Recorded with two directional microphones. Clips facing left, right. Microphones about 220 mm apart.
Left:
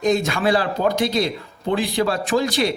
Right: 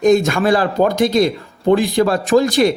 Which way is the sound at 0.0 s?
45° right (ahead or behind).